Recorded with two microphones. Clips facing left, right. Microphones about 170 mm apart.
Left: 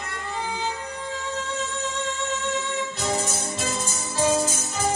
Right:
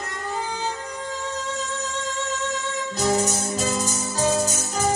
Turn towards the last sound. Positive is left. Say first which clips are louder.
# right 2 dB
turn(degrees=-40)  # may be behind; listen again after turning